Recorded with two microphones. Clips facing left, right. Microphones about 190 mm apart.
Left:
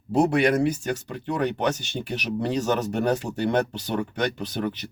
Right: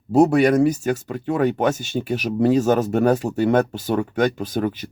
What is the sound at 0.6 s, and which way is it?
Speech, 45° right (ahead or behind).